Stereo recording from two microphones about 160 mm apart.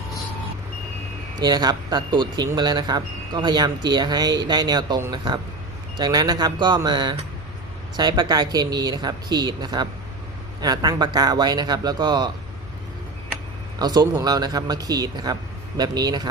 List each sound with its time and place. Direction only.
1.4 s speech: 25° right (ahead or behind)
13.7 s speech: 25° right (ahead or behind)